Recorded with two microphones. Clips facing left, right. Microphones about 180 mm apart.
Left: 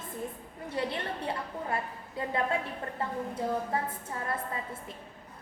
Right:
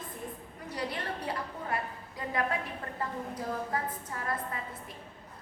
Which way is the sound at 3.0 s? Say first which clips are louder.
Left 3 dB; 25° left (ahead or behind).